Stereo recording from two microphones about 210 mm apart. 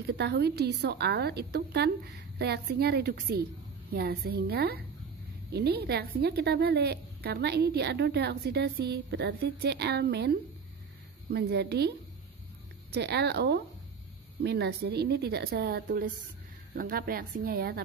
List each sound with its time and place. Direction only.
0.1 s a woman's voice: 55° right (ahead or behind)
12.9 s a woman's voice: 50° right (ahead or behind)